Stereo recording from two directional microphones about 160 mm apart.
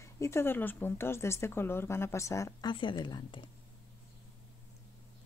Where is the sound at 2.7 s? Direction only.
30° left (ahead or behind).